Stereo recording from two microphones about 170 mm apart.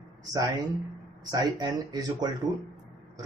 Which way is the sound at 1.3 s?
25° right (ahead or behind).